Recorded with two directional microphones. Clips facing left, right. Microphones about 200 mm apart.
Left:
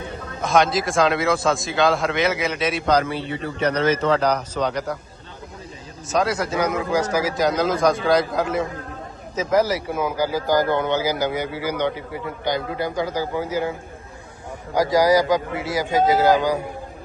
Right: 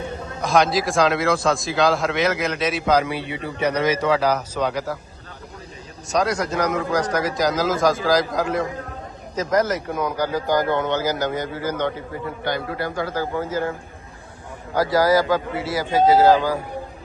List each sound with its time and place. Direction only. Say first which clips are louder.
0.4 s a man's voice: even; centre (ahead or behind)
6.1 s a man's voice: even; centre (ahead or behind)
14.8 s a man's voice: left 1 dB; 15° left (ahead or behind)